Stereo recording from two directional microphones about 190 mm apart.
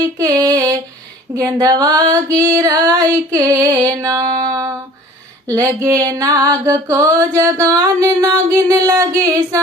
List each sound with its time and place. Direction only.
0.0 s female singing: 20° right (ahead or behind)
3.8 s music: 15° right (ahead or behind)